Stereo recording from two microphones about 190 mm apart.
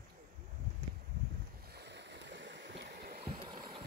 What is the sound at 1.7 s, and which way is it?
Boat, 60° right (ahead or behind).